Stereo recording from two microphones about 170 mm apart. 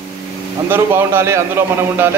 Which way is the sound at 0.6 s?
15° right (ahead or behind).